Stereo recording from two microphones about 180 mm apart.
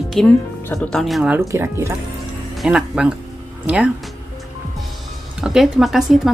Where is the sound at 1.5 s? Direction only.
15° right (ahead or behind).